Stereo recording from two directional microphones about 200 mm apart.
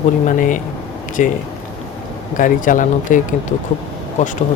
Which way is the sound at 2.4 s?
40° left (ahead or behind).